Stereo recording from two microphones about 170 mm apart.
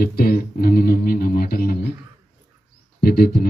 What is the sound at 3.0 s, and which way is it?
Speech, 65° left (ahead or behind).